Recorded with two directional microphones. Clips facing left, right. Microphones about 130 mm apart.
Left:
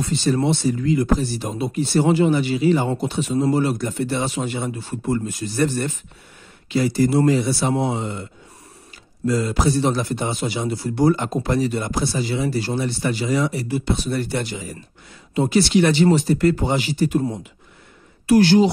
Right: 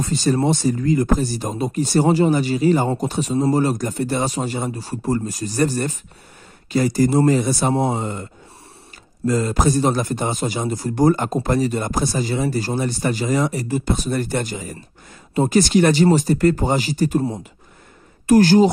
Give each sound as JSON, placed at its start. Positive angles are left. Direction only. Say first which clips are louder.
{"t": 0.0, "sound": "speech", "louder": "right 1 dB", "side_deg": -40}